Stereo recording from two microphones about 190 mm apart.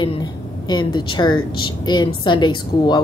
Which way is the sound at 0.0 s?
25° left (ahead or behind).